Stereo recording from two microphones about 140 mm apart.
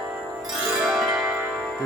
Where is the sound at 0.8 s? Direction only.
Centre (ahead or behind).